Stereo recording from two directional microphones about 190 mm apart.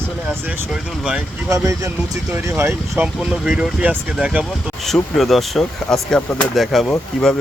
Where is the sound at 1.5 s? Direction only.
15° right (ahead or behind).